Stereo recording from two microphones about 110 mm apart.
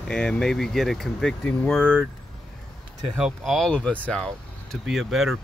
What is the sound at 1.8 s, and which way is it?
Speech, 5° right (ahead or behind).